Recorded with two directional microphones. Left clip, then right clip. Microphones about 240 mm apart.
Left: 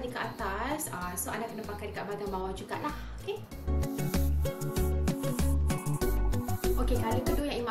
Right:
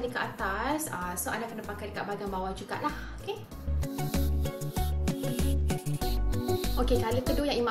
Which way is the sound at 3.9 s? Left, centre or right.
Centre.